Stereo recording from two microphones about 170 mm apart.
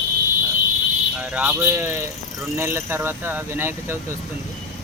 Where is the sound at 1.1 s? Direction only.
10° right (ahead or behind).